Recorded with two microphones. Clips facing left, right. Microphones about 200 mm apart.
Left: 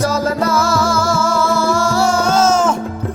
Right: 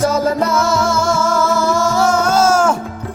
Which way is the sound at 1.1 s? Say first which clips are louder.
Right 1 dB; 10° left (ahead or behind).